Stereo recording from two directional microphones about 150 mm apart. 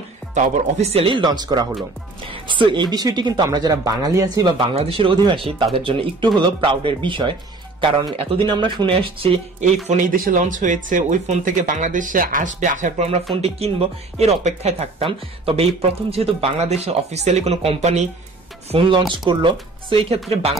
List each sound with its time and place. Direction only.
0.3 s speech: 50° right (ahead or behind); by 4.6 s 25° right (ahead or behind)
4.7 s speech: 40° right (ahead or behind)
9.8 s speech: 65° right (ahead or behind); by 20.2 s 35° right (ahead or behind)